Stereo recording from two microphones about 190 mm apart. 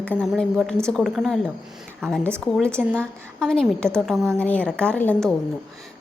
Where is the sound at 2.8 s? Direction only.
Centre (ahead or behind).